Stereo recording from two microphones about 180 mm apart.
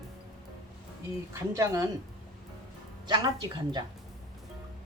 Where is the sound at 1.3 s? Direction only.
15° right (ahead or behind).